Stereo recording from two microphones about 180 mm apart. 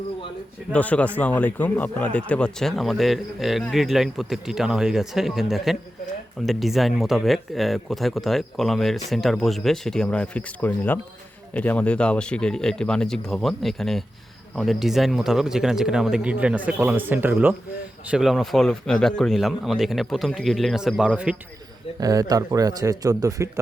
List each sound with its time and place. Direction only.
0.7 s a man's voice: 10° left (ahead or behind)
22.0 s speech: 20° right (ahead or behind)